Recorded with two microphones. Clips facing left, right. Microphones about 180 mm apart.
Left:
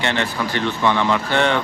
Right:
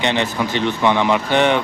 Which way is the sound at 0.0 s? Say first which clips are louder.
Right 3 dB; 15° right (ahead or behind).